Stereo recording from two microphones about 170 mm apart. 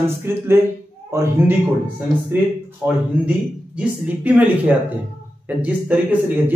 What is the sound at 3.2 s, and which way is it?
Speech, 10° right (ahead or behind).